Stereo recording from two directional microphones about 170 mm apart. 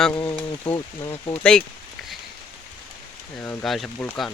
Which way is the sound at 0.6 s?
15° left (ahead or behind).